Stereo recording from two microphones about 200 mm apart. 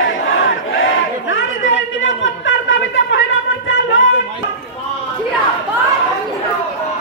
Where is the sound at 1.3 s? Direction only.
70° left (ahead or behind).